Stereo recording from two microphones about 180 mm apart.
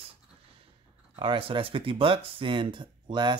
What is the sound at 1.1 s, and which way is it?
Speech, 30° right (ahead or behind).